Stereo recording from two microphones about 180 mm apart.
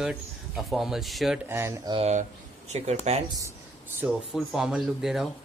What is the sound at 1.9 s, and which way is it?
Speech, 35° right (ahead or behind).